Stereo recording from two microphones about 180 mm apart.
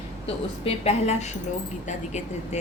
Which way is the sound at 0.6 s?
35° left (ahead or behind).